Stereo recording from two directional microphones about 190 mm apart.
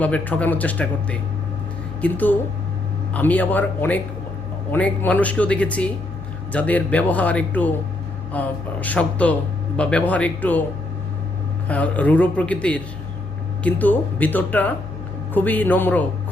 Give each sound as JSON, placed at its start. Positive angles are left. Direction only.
{"t": 0.0, "sound": "speech", "side_deg": 10}
{"t": 11.7, "sound": "speech", "side_deg": 10}